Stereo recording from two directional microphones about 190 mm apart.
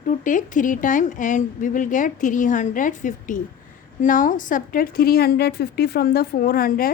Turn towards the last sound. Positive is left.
turn(degrees=50)  # may be behind; listen again after turning